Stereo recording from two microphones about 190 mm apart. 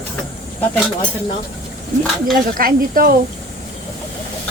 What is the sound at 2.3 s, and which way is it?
Speech, 50° right (ahead or behind).